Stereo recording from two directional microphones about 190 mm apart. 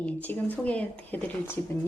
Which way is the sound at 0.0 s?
10° left (ahead or behind).